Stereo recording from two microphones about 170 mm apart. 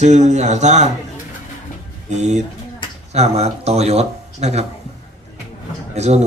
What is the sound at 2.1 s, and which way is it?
Speech, 40° right (ahead or behind).